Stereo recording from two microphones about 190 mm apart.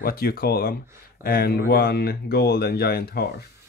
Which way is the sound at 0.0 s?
50° left (ahead or behind).